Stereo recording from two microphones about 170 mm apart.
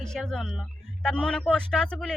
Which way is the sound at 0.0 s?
5° left (ahead or behind).